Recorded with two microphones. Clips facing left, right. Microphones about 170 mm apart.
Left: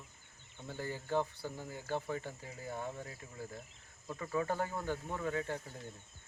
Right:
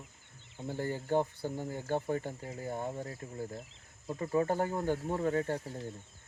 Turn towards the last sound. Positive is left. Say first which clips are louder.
# right 6 dB
turn(degrees=-40)  # may be behind; listen again after turning